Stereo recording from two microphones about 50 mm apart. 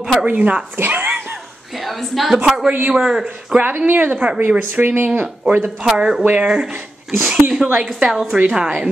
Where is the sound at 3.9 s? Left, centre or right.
Right.